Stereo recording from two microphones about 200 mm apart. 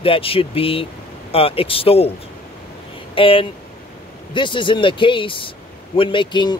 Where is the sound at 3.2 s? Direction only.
25° left (ahead or behind).